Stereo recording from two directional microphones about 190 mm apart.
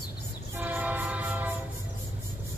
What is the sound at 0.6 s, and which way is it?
Train, 10° right (ahead or behind).